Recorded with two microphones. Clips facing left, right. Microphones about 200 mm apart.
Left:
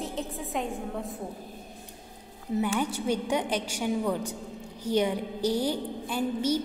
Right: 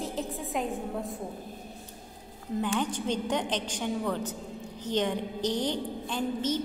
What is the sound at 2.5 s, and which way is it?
A woman's voice, 10° left (ahead or behind).